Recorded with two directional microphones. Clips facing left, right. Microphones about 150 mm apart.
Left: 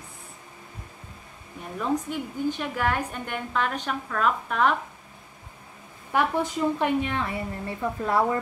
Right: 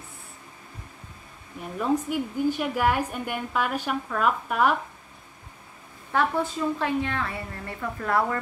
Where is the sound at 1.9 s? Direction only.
10° right (ahead or behind).